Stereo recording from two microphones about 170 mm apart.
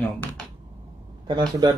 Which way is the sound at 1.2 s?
25° right (ahead or behind).